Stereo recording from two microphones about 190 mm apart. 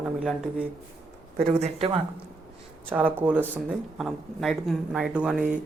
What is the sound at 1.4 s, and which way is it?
Speech, 30° right (ahead or behind).